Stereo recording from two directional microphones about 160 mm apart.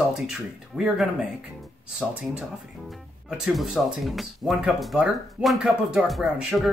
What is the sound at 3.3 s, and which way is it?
Speech, 5° right (ahead or behind).